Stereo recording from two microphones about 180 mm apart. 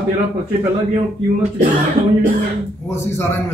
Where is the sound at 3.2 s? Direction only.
15° left (ahead or behind).